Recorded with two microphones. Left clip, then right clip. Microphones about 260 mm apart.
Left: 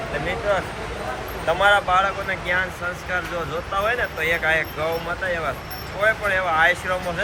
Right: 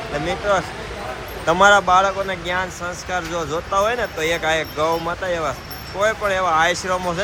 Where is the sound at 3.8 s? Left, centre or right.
Centre.